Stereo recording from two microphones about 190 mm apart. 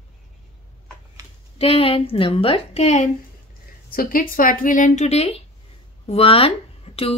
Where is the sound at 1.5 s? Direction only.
30° left (ahead or behind).